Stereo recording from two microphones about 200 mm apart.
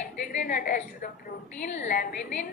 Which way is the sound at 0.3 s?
45° left (ahead or behind).